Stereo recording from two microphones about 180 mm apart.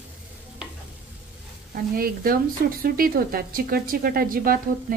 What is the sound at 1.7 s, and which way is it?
A woman's voice, 55° right (ahead or behind).